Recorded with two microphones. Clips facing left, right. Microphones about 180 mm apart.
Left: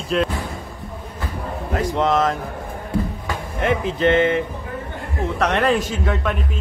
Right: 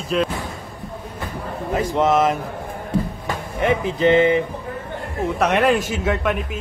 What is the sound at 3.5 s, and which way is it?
Speech, centre (ahead or behind).